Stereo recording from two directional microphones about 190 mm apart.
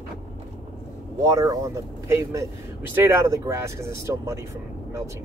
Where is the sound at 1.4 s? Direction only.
20° right (ahead or behind).